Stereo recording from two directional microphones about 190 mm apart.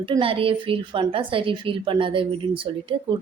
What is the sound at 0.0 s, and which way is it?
A woman's voice, 25° right (ahead or behind).